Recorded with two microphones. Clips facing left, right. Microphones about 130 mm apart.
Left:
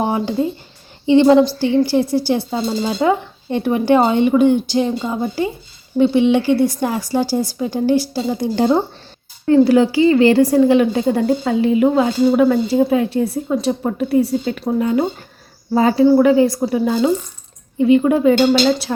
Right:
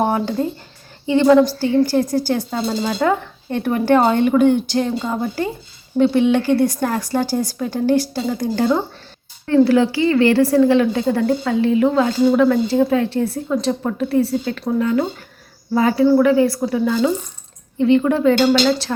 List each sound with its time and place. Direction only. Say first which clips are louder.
0.0 s speech: even; 10° left (ahead or behind)
1.0 s speech: left 2 dB; 25° left (ahead or behind); by 4.6 s 5° left (ahead or behind)
4.7 s a sound: left 2 dB; 10° left (ahead or behind)
5.2 s speech: left 2 dB; 10° left (ahead or behind)